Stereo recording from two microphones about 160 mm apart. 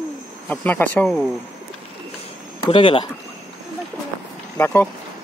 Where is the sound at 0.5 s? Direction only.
10° left (ahead or behind).